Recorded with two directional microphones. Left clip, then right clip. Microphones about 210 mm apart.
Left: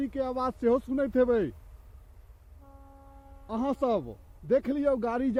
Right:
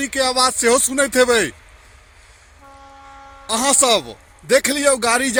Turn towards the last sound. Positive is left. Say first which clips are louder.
# right 11 dB
turn(degrees=0)  # may be behind; listen again after turning